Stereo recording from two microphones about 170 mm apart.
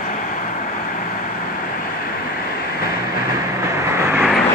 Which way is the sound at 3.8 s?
15° right (ahead or behind).